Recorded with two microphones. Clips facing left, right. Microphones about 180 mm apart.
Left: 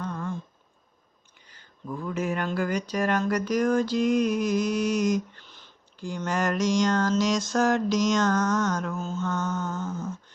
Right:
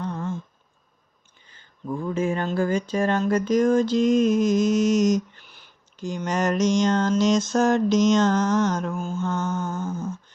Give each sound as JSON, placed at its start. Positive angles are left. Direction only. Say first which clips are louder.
{"t": 0.0, "sound": "a sound", "louder": "right 3 dB", "side_deg": -20}
{"t": 1.9, "sound": "speech", "louder": "right 4 dB", "side_deg": -30}
{"t": 8.9, "sound": "mantra", "louder": "right 3 dB", "side_deg": -10}